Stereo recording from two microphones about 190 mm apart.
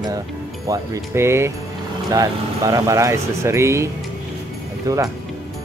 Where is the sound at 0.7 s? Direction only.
15° right (ahead or behind).